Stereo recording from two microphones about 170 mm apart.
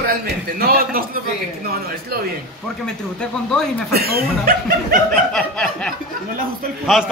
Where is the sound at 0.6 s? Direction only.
60° right (ahead or behind).